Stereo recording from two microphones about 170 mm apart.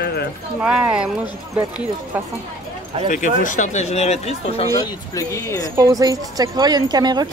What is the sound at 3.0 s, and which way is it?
Speech, 50° left (ahead or behind).